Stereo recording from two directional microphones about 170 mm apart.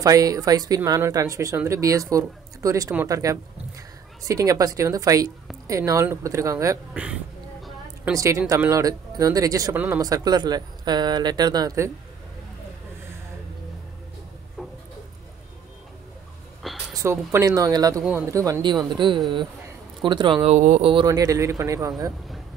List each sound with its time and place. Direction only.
0.0 s speech: 20° right (ahead or behind)
6.9 s speech: 5° right (ahead or behind)
8.1 s speech: 20° right (ahead or behind)
16.9 s speech: 15° right (ahead or behind)
20.5 s speech: 45° right (ahead or behind)
20.8 s speech: 30° right (ahead or behind)